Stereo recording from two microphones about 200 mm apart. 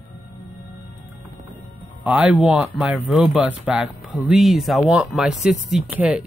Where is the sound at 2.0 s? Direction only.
5° right (ahead or behind).